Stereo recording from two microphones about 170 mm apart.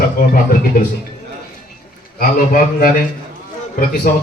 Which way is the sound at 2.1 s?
60° left (ahead or behind).